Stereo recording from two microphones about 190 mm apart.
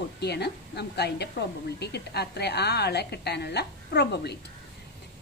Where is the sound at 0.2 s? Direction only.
60° left (ahead or behind).